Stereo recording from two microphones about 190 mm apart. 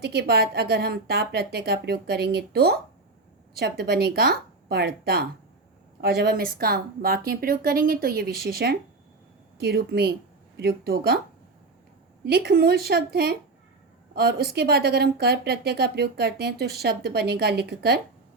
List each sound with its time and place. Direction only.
0.0 s speech: 55° right (ahead or behind)
12.2 s speech: 55° right (ahead or behind)